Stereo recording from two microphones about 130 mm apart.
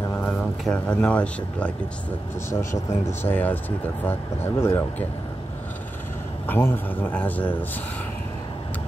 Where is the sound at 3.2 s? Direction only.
15° left (ahead or behind).